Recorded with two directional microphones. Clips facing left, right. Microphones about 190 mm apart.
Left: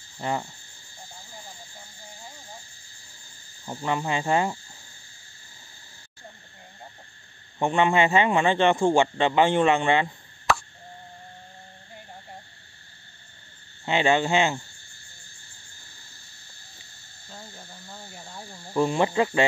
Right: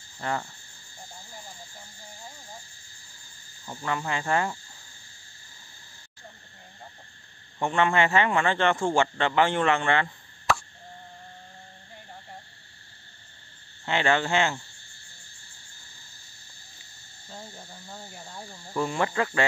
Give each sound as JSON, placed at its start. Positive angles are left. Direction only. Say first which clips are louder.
{"t": 0.2, "sound": "cricket", "louder": "left 2 dB", "side_deg": 20}
{"t": 3.6, "sound": "cricket", "louder": "left 3 dB", "side_deg": 20}
{"t": 7.5, "sound": "a man's voice", "louder": "left 2 dB", "side_deg": 20}
{"t": 13.8, "sound": "a man's voice", "louder": "left 3 dB", "side_deg": 15}
{"t": 17.3, "sound": "a sound", "louder": "right 1 dB", "side_deg": -10}
{"t": 18.1, "sound": "cricket", "louder": "even", "side_deg": 5}
{"t": 18.7, "sound": "cricket", "louder": "left 5 dB", "side_deg": 20}